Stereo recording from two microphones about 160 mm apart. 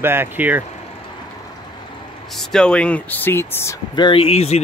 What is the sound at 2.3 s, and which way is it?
Speech, 5° left (ahead or behind).